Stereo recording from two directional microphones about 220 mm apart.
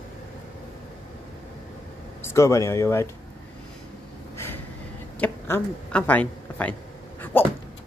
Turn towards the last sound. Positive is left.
turn(degrees=10)  # may be behind; listen again after turning